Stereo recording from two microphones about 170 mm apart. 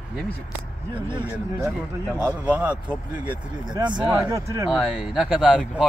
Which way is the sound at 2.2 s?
10° right (ahead or behind).